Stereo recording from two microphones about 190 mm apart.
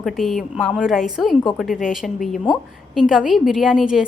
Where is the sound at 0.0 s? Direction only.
Centre (ahead or behind).